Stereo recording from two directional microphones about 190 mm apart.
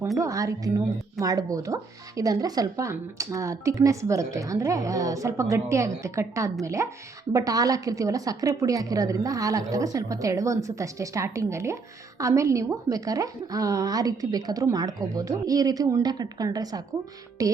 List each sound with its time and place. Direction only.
0.2 s a woman's voice: 15° right (ahead or behind)